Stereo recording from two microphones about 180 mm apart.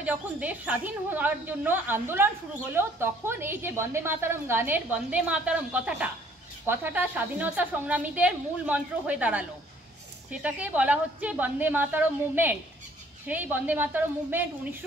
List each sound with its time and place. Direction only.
0.0 s a woman's voice: 10° right (ahead or behind)